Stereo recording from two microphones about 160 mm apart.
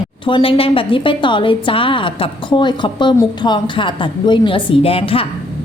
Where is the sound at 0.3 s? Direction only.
35° left (ahead or behind).